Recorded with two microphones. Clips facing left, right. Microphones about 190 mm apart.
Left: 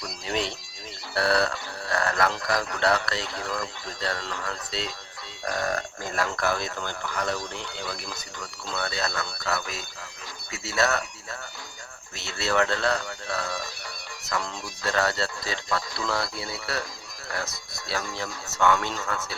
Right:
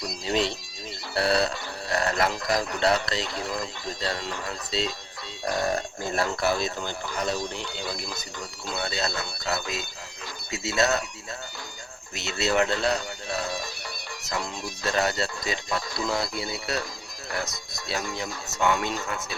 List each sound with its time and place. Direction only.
0.0 s a sound: 25° right (ahead or behind)
2.5 s speech: 20° right (ahead or behind)
12.1 s speech: 20° right (ahead or behind)
14.8 s speech: 20° right (ahead or behind)